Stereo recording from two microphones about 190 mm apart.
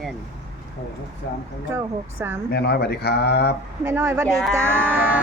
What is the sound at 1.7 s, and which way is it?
Music, 10° right (ahead or behind).